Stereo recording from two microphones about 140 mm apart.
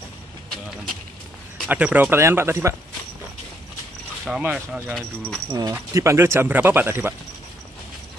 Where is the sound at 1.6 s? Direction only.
10° right (ahead or behind).